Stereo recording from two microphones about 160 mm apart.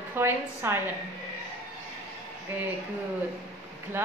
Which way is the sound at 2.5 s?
10° right (ahead or behind).